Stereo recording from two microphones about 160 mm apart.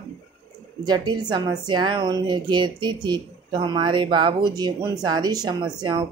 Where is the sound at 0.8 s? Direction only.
25° right (ahead or behind).